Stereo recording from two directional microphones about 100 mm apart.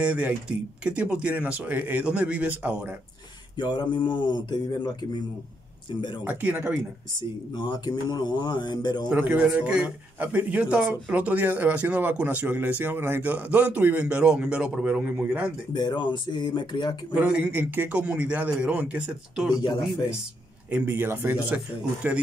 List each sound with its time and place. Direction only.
0.0 s a man's voice: 10° right (ahead or behind)
3.5 s speech: 50° left (ahead or behind)
6.2 s a man's voice: 15° right (ahead or behind)
7.2 s speech: 45° left (ahead or behind)
9.1 s a man's voice: 15° right (ahead or behind)
15.7 s speech: 50° left (ahead or behind)
17.1 s a man's voice: 10° right (ahead or behind)
19.6 s speech: 55° left (ahead or behind)
20.7 s a man's voice: 20° right (ahead or behind)